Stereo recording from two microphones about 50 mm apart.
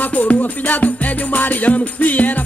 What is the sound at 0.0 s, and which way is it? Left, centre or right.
Music, left.